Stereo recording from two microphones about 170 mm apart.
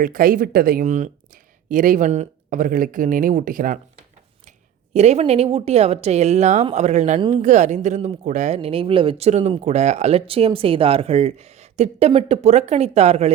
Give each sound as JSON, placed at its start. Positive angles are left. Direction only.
{"t": 0.0, "sound": "speech", "side_deg": -55}
{"t": 4.9, "sound": "speech", "side_deg": -40}
{"t": 7.2, "sound": "speech", "side_deg": -30}
{"t": 7.4, "sound": "speech", "side_deg": -45}